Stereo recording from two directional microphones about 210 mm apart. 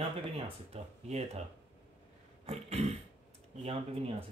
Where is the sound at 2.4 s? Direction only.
30° right (ahead or behind).